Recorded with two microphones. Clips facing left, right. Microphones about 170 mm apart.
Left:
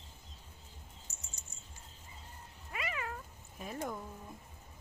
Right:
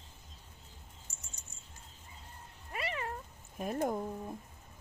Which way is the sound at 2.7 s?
35° right (ahead or behind).